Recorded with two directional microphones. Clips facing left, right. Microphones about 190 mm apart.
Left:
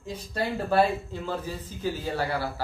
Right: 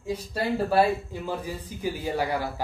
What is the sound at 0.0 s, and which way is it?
A man's voice, 10° right (ahead or behind).